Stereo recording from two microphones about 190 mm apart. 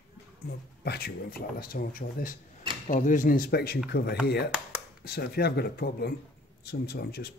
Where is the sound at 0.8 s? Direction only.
55° left (ahead or behind).